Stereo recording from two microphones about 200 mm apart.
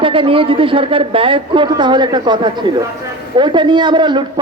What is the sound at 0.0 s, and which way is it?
A man's voice, 25° right (ahead or behind).